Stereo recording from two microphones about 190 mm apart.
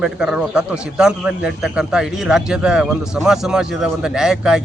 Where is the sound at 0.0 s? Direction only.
5° right (ahead or behind).